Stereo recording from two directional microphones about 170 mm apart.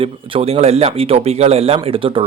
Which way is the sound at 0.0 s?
35° right (ahead or behind).